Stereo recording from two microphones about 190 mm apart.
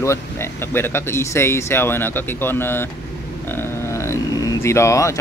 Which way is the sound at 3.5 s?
10° left (ahead or behind).